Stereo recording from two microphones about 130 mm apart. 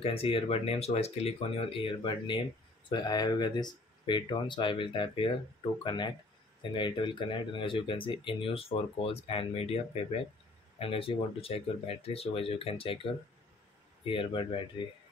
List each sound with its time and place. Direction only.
0.0 s speech: 45° left (ahead or behind)
10.8 s speech: 45° left (ahead or behind)